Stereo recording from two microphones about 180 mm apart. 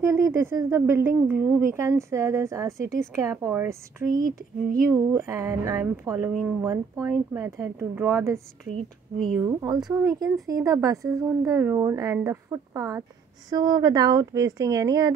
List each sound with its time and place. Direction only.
0.0 s speech: 15° right (ahead or behind)
4.2 s speech: 50° right (ahead or behind)
4.9 s speech: 15° right (ahead or behind)
9.4 s speech: 20° right (ahead or behind)